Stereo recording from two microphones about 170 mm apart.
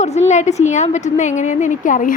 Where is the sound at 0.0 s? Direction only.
40° left (ahead or behind).